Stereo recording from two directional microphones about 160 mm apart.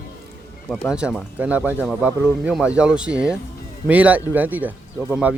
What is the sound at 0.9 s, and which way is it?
Speech, centre (ahead or behind).